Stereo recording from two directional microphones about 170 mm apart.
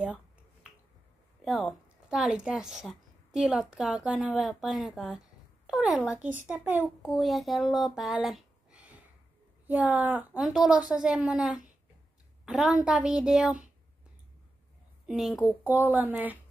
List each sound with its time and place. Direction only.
1.4 s a woman's voice: centre (ahead or behind)
15.0 s a woman's voice: 5° right (ahead or behind)